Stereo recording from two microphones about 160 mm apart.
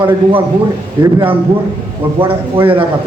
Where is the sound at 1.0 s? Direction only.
30° right (ahead or behind).